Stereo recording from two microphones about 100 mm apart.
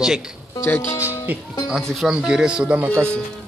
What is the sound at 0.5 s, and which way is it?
Speech, 25° left (ahead or behind).